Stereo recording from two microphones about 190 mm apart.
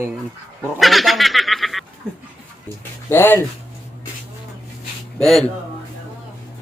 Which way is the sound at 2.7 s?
10° left (ahead or behind).